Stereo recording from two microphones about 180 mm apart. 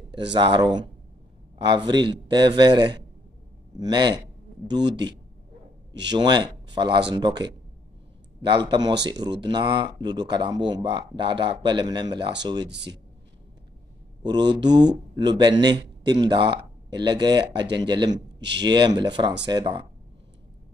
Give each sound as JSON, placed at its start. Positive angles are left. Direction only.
{"t": 0.3, "sound": "speech", "side_deg": -25}
{"t": 6.0, "sound": "speech", "side_deg": -25}
{"t": 12.6, "sound": "speech", "side_deg": -70}
{"t": 14.2, "sound": "speech", "side_deg": -25}